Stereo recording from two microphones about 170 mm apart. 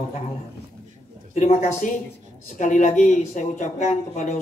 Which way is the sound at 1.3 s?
40° left (ahead or behind).